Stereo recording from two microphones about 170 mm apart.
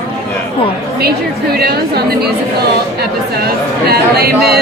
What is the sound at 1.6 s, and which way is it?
Speech, 70° right (ahead or behind).